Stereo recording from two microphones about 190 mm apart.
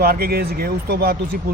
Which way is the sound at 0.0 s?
55° right (ahead or behind).